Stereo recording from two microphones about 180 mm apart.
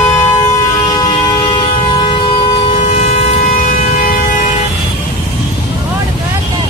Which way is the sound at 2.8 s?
40° left (ahead or behind).